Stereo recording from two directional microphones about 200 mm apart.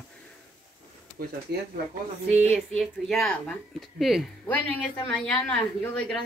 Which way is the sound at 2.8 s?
Centre (ahead or behind).